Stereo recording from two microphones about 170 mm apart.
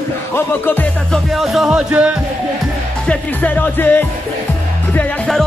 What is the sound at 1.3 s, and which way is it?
Speech, centre (ahead or behind).